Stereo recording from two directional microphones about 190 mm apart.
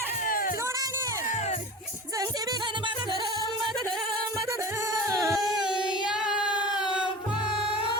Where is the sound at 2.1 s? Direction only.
20° right (ahead or behind).